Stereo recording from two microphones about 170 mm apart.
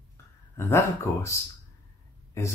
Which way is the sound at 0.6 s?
15° left (ahead or behind).